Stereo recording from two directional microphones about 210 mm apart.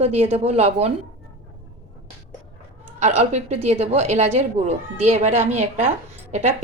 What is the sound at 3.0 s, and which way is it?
A woman's voice, 30° right (ahead or behind).